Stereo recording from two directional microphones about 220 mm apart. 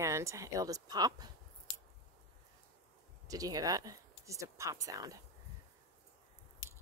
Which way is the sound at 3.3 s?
15° right (ahead or behind).